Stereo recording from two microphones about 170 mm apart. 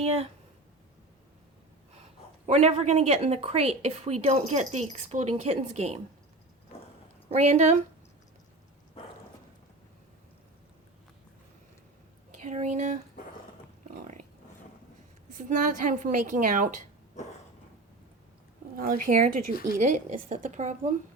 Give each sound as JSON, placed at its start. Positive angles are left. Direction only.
{"t": 0.0, "sound": "a woman's voice", "side_deg": -40}
{"t": 2.5, "sound": "a woman's voice", "side_deg": -40}
{"t": 7.3, "sound": "a woman's voice", "side_deg": -45}
{"t": 12.4, "sound": "a woman's voice", "side_deg": -45}
{"t": 13.8, "sound": "a sound", "side_deg": -50}
{"t": 15.4, "sound": "a woman's voice", "side_deg": -50}
{"t": 17.2, "sound": "a sound", "side_deg": 45}
{"t": 18.8, "sound": "a woman's voice", "side_deg": -55}